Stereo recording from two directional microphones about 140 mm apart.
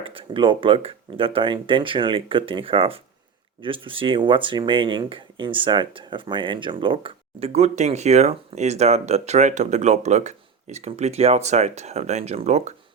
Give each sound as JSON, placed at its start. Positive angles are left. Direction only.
{"t": 0.0, "sound": "speech", "side_deg": -40}